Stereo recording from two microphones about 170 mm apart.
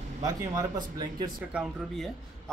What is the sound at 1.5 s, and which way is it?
Speech, centre (ahead or behind).